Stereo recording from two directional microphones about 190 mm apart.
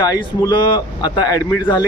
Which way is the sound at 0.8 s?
20° left (ahead or behind).